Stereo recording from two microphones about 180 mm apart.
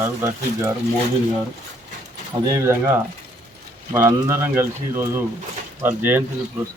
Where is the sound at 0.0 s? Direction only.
15° right (ahead or behind).